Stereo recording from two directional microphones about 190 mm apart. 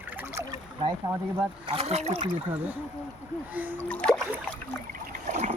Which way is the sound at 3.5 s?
10° right (ahead or behind).